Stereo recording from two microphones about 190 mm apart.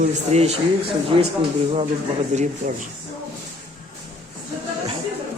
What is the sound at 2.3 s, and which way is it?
Speech, 40° right (ahead or behind).